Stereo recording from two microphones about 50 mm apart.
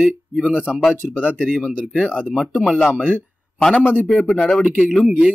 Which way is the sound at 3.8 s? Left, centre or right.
Left.